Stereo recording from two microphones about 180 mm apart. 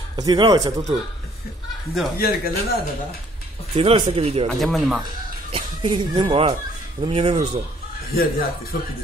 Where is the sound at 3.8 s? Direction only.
30° right (ahead or behind).